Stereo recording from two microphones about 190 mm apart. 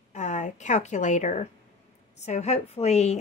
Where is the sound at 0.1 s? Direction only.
40° left (ahead or behind).